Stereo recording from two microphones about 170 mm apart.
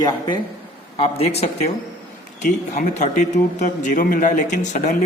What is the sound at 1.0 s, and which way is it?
Speech, 35° left (ahead or behind).